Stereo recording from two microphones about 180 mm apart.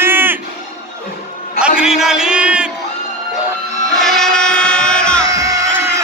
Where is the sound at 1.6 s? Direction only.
5° right (ahead or behind).